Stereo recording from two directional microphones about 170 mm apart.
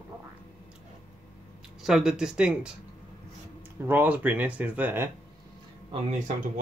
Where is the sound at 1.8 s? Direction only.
5° right (ahead or behind).